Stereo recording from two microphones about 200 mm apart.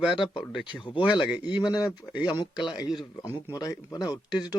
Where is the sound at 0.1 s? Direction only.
25° left (ahead or behind).